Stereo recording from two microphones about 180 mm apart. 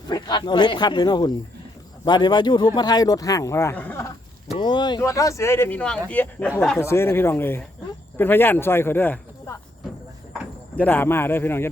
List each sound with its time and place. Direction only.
0.1 s speech: 25° left (ahead or behind)
4.5 s speech: 25° left (ahead or behind)
10.8 s speech: 10° left (ahead or behind)